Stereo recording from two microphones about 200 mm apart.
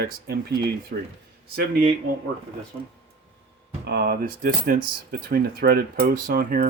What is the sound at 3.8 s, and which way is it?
Speech, 55° right (ahead or behind).